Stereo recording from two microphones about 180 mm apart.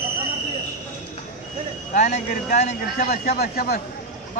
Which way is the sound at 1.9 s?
55° left (ahead or behind).